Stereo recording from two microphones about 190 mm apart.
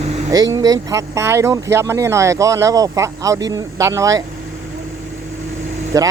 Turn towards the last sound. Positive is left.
turn(degrees=-20)  # may be behind; listen again after turning